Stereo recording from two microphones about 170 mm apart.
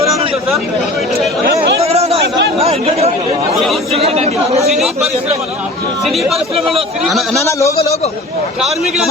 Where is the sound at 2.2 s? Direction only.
85° right.